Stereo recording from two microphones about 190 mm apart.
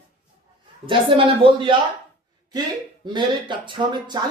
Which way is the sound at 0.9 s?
25° right (ahead or behind).